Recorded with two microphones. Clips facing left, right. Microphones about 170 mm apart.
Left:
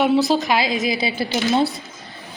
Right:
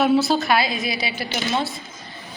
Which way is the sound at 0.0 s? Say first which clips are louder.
Left 1 dB; 15° left (ahead or behind).